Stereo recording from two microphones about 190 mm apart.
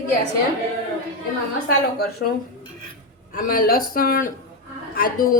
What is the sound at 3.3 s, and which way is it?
A woman's voice, 50° left (ahead or behind).